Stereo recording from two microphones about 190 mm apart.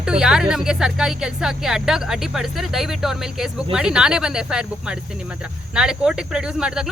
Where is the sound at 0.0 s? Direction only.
5° right (ahead or behind).